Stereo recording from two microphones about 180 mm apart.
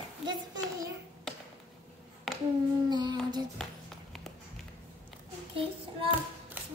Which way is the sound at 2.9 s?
25° right (ahead or behind).